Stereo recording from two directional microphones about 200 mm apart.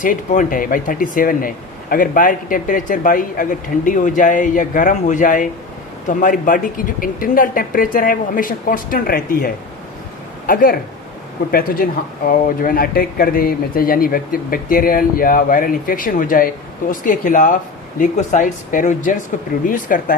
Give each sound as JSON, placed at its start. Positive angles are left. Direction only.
{"t": 0.0, "sound": "speech", "side_deg": 40}